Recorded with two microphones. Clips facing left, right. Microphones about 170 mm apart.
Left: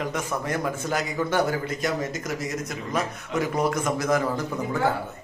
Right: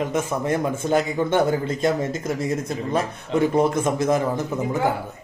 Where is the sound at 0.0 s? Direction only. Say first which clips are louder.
Right 5 dB; 20° right (ahead or behind).